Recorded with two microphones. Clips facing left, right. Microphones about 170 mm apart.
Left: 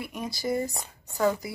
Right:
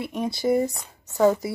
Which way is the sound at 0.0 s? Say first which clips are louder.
Right 7 dB; 25° right (ahead or behind).